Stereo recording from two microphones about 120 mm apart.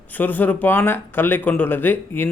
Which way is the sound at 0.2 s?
15° left (ahead or behind).